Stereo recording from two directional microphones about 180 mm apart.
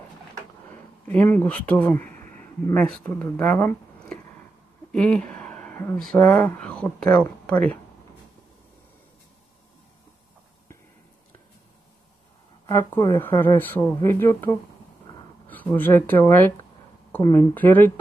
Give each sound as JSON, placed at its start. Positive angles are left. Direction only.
{"t": 1.0, "sound": "speech", "side_deg": 10}
{"t": 2.0, "sound": "a sound", "side_deg": -45}
{"t": 2.6, "sound": "speech", "side_deg": 5}
{"t": 4.9, "sound": "a sound", "side_deg": 5}
{"t": 6.1, "sound": "speech", "side_deg": 10}
{"t": 12.6, "sound": "speech", "side_deg": 15}